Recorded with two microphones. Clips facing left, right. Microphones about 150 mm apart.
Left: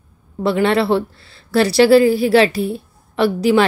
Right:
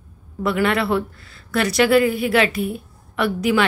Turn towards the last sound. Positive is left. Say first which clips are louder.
# left 5 dB
turn(degrees=30)  # may be behind; listen again after turning